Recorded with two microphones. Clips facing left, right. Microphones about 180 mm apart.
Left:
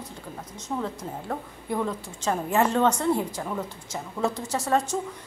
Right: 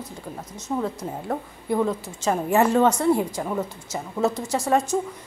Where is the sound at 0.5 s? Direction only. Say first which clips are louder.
Right 4 dB; 10° right (ahead or behind).